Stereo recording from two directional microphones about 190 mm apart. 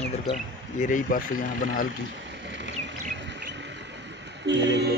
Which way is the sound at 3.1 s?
65° right (ahead or behind).